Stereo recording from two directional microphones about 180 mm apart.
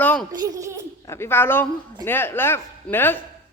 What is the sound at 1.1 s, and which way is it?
A woman's voice, 15° left (ahead or behind).